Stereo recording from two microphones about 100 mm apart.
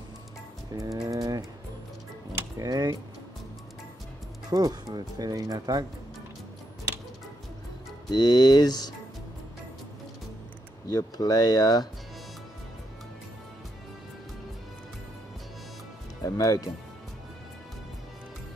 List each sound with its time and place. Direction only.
0.7 s speech: 40° right (ahead or behind)
2.6 s speech: 40° right (ahead or behind)
4.5 s speech: 45° right (ahead or behind)
8.1 s speech: 45° left (ahead or behind)
10.9 s speech: 40° left (ahead or behind)
16.2 s speech: 35° left (ahead or behind)